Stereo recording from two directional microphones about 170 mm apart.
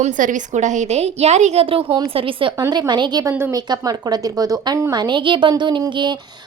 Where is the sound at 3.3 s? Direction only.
15° right (ahead or behind).